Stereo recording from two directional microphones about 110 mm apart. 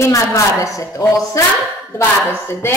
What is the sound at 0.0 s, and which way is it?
A woman's voice, 30° left (ahead or behind).